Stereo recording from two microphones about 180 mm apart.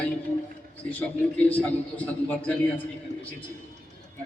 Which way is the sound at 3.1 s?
45° right (ahead or behind).